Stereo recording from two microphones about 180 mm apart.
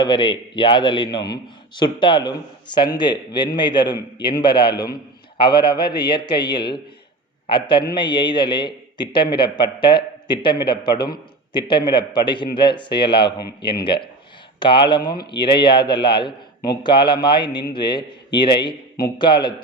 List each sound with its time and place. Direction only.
0.0 s a man's voice: 25° left (ahead or behind)
14.6 s a man's voice: 25° left (ahead or behind)